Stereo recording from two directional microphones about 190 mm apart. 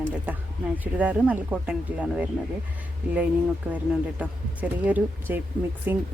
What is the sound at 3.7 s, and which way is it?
Speech, 5° right (ahead or behind).